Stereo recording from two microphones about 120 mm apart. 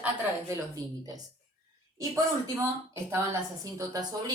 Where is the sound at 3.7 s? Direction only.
30° right (ahead or behind).